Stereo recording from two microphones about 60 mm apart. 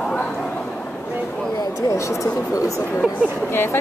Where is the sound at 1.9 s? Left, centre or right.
Left.